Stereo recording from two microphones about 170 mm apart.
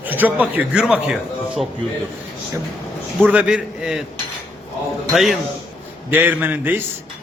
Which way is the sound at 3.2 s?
5° right (ahead or behind).